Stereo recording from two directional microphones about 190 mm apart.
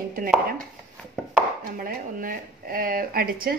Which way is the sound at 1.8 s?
50° right (ahead or behind).